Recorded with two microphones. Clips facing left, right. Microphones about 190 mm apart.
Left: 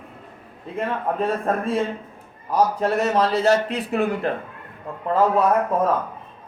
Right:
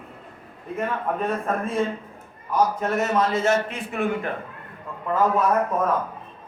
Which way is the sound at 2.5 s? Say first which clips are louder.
Left 2 dB; 35° left (ahead or behind).